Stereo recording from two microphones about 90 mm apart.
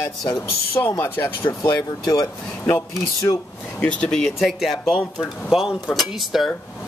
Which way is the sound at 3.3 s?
55° left (ahead or behind).